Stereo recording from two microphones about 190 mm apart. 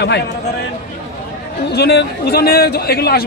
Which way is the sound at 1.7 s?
60° left (ahead or behind).